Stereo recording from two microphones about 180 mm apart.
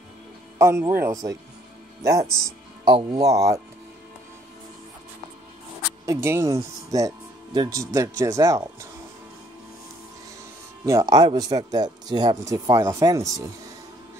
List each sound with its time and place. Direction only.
0.6 s speech: 15° right (ahead or behind)
2.8 s speech: 25° right (ahead or behind)
6.0 s speech: 15° right (ahead or behind)
10.9 s speech: 20° right (ahead or behind)